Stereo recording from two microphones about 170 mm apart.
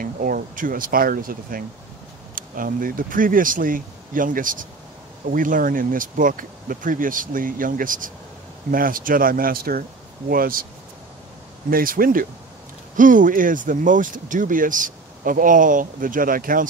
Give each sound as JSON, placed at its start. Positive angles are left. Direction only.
{"t": 0.0, "sound": "speech", "side_deg": -55}
{"t": 11.7, "sound": "speech", "side_deg": -55}